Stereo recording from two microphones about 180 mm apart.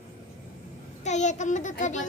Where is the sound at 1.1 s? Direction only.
40° left (ahead or behind).